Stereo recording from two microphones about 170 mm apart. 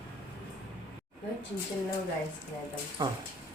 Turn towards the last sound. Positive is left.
turn(degrees=-25)  # may be behind; listen again after turning